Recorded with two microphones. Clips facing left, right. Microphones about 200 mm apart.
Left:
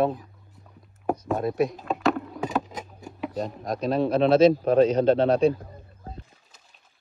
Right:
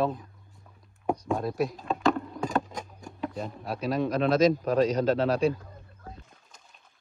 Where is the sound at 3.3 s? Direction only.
40° left (ahead or behind).